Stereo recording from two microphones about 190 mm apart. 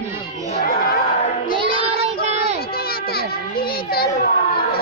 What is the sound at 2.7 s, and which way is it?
Children playing, 55° left (ahead or behind).